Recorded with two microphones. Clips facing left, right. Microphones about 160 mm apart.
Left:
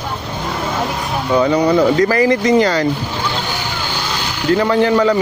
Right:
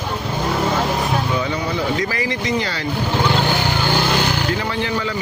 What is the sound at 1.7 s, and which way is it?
Speech, 45° left (ahead or behind).